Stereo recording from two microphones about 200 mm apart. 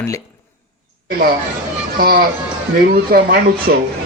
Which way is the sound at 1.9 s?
45° right (ahead or behind).